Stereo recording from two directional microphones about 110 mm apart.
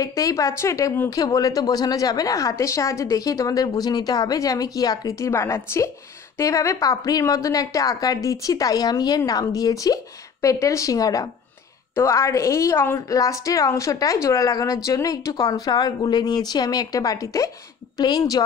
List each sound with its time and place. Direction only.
0.0 s a woman's voice: 30° left (ahead or behind)